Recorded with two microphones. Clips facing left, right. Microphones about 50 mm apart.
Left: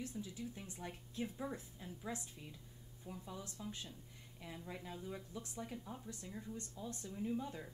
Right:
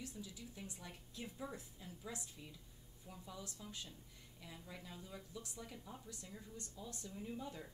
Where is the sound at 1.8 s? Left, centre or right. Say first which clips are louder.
Left 4 dB; left.